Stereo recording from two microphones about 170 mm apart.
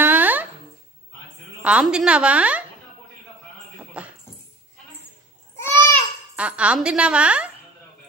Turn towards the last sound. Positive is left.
turn(degrees=-5)  # may be behind; listen again after turning